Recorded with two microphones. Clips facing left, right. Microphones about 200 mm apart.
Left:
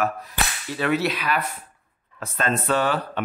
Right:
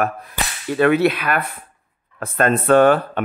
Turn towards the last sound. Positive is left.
turn(degrees=-55)  # may be behind; listen again after turning